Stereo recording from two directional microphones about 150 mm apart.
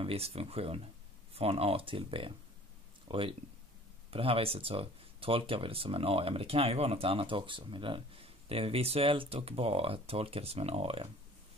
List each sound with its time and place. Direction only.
0.0 s speech: 40° right (ahead or behind)